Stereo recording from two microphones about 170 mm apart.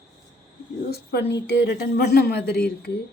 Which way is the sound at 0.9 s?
70° left (ahead or behind).